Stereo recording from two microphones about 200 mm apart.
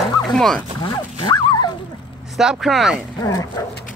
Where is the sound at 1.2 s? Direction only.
20° left (ahead or behind).